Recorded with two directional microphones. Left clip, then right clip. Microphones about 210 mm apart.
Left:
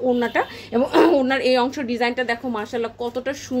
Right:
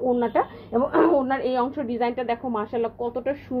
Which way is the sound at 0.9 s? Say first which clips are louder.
Left 4 dB; 20° left (ahead or behind).